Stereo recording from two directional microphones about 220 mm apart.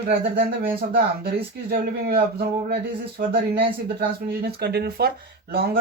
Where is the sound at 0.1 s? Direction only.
45° right (ahead or behind).